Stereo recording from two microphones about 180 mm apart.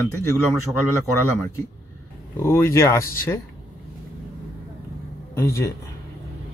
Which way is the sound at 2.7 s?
15° left (ahead or behind).